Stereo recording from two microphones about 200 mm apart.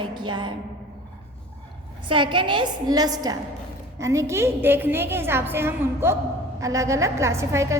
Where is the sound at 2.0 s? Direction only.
25° right (ahead or behind).